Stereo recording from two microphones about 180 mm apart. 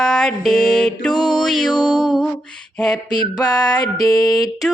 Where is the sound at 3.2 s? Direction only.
20° left (ahead or behind).